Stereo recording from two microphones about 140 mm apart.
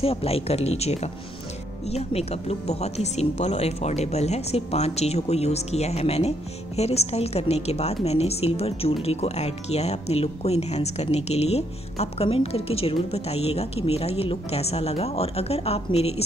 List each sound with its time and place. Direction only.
0.0 s speech: 45° left (ahead or behind)